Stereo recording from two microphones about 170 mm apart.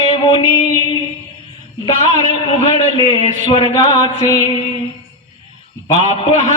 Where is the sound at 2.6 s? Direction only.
35° left (ahead or behind).